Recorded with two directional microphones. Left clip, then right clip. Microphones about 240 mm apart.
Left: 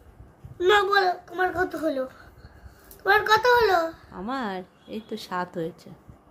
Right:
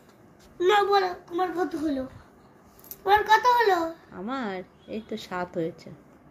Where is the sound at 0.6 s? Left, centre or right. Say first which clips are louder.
Left 1 dB; left.